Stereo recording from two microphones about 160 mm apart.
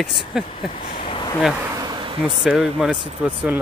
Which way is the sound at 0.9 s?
35° left (ahead or behind).